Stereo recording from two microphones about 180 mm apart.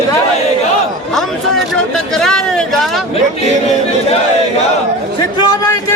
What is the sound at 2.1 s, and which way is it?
Speech, 5° left (ahead or behind).